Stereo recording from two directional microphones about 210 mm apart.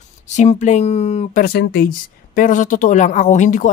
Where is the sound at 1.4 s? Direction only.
45° left (ahead or behind).